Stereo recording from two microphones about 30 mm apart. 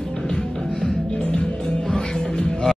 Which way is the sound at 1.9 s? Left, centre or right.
Centre.